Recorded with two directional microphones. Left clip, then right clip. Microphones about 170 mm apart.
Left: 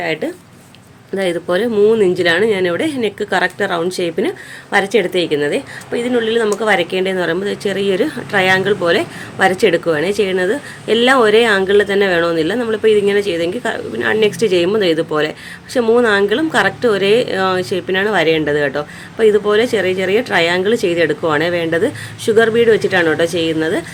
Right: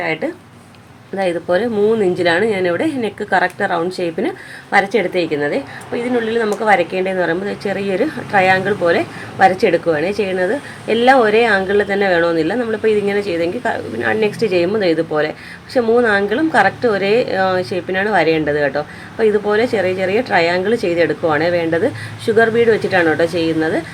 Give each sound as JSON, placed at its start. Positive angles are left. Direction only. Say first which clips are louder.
{"t": 0.0, "sound": "a woman's voice", "louder": "even", "side_deg": 20}